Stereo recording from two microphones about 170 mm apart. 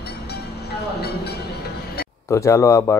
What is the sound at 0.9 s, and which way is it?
Train, 70° left (ahead or behind).